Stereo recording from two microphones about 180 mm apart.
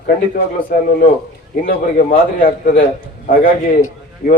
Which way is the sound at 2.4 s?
65° left (ahead or behind).